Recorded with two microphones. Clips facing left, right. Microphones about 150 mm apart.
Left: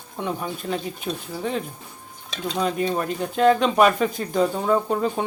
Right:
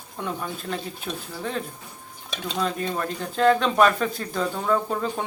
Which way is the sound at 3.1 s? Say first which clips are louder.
Left 1 dB; 10° left (ahead or behind).